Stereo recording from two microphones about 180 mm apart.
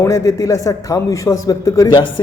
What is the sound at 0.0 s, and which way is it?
A man's voice, 20° left (ahead or behind).